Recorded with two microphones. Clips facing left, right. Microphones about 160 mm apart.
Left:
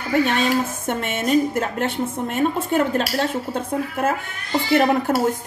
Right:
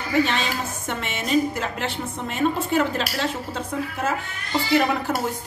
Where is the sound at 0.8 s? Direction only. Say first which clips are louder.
Left 5 dB; 50° left (ahead or behind).